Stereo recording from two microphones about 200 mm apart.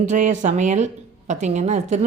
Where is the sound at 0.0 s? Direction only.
40° right (ahead or behind).